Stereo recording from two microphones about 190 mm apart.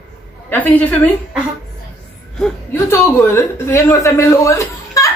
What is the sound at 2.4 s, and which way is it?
A woman's voice, 10° left (ahead or behind).